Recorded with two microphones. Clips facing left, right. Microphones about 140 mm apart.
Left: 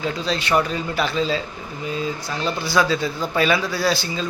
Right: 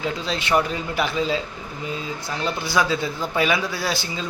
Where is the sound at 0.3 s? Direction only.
20° right (ahead or behind).